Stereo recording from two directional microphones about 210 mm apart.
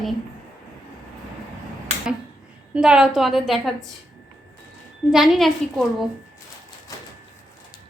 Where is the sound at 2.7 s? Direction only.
5° right (ahead or behind).